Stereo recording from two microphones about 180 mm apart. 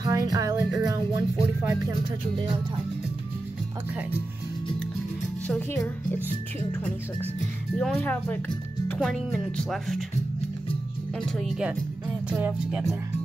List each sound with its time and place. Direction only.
0.0 s music: 20° right (ahead or behind)
7.7 s speech: 5° left (ahead or behind)
11.1 s speech: centre (ahead or behind)
12.3 s music: 10° right (ahead or behind)